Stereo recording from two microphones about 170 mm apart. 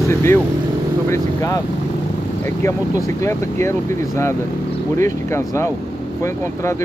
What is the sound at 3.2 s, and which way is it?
Speech, 15° left (ahead or behind).